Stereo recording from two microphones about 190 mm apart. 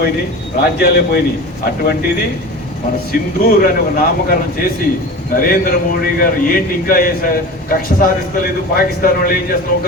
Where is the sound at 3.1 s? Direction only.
50° left (ahead or behind).